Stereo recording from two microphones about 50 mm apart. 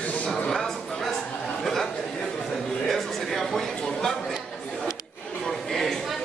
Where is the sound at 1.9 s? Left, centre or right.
Centre.